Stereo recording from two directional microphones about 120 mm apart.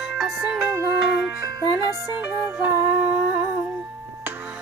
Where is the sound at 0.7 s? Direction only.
25° right (ahead or behind).